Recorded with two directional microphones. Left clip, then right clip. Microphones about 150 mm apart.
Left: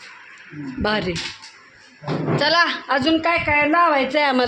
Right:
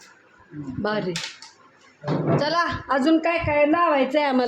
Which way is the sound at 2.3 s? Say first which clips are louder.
Left 5 dB; centre (ahead or behind).